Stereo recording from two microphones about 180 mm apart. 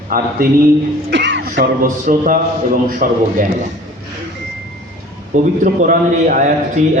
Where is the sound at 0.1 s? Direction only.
55° right (ahead or behind).